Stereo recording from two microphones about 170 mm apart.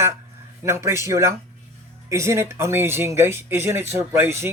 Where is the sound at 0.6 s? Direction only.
15° right (ahead or behind).